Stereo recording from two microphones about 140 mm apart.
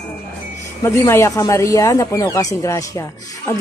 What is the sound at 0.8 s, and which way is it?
A woman's voice, 20° left (ahead or behind).